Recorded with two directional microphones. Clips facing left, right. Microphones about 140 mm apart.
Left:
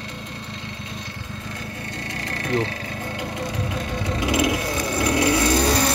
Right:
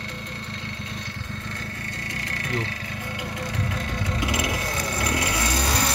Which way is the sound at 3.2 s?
20° left (ahead or behind).